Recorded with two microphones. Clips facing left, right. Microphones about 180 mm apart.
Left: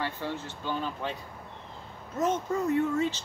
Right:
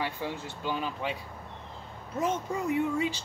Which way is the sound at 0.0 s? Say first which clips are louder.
Even; 10° right (ahead or behind).